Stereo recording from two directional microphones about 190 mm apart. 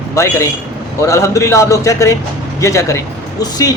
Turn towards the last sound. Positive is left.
turn(degrees=20)  # may be behind; listen again after turning